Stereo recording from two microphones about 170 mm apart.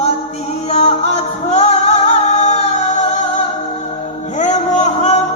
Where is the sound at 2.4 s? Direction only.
40° left (ahead or behind).